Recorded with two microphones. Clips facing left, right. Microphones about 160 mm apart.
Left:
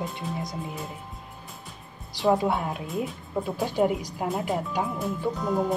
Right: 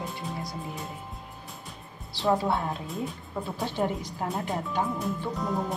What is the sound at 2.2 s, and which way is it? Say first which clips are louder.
Speech: left 2 dB; 15° left (ahead or behind).